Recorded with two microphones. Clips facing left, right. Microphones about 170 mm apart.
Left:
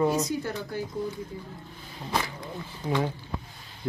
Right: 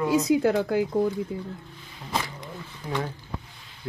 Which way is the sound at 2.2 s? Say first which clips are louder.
Left 1 dB; 10° left (ahead or behind).